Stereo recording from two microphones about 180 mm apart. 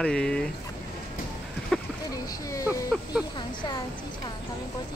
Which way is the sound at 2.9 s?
5° right (ahead or behind).